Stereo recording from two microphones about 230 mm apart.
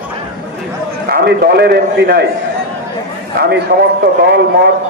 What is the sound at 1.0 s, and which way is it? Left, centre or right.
A man's voice, right.